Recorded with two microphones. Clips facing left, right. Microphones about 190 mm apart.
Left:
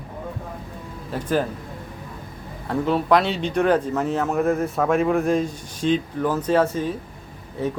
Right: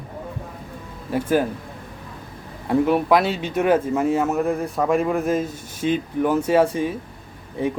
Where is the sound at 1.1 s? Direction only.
10° right (ahead or behind).